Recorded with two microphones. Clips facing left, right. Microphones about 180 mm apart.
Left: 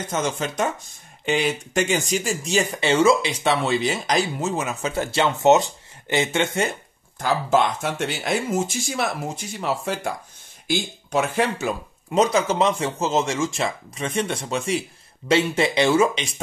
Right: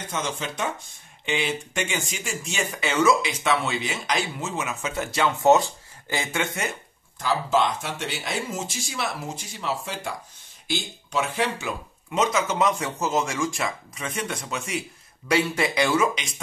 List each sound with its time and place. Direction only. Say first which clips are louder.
0.1 s speech: left 4 dB; 45° left (ahead or behind); by 6.7 s 25° left (ahead or behind)
7.2 s speech: left 3 dB; 50° left (ahead or behind); by 16.3 s 30° left (ahead or behind)